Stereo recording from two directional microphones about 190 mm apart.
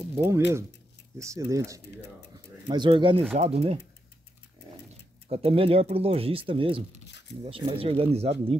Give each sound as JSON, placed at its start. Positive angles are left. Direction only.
{"t": 0.1, "sound": "speech", "side_deg": -10}
{"t": 5.3, "sound": "speech", "side_deg": -30}
{"t": 7.1, "sound": "a sound", "side_deg": 65}
{"t": 7.4, "sound": "speech", "side_deg": -30}